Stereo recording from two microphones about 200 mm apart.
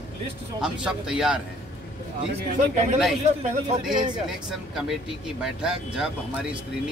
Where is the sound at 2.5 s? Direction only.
35° right (ahead or behind).